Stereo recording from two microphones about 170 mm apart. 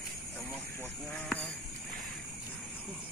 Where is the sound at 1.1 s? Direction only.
5° left (ahead or behind).